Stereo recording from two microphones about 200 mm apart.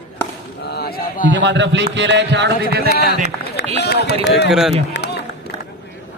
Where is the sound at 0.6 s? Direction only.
55° left (ahead or behind).